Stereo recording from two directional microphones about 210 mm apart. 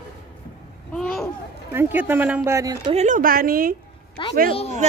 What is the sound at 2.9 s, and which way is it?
Speech, 35° right (ahead or behind).